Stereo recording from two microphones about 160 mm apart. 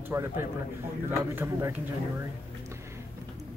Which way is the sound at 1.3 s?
15° right (ahead or behind).